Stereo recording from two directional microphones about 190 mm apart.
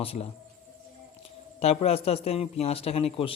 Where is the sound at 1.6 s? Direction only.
35° left (ahead or behind).